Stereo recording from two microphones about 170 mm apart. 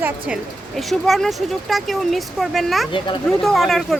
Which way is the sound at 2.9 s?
25° left (ahead or behind).